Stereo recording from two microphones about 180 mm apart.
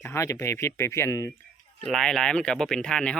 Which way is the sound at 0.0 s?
15° left (ahead or behind).